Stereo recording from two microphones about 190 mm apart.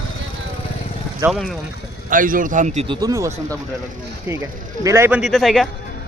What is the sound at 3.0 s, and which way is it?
Speech, 15° right (ahead or behind).